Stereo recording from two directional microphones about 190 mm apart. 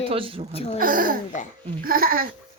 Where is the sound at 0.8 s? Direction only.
45° right (ahead or behind).